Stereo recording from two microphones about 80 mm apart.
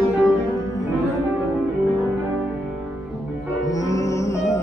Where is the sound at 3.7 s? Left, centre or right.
Left.